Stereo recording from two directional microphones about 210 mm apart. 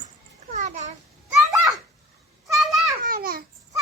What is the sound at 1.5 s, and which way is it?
Children playing, 15° right (ahead or behind).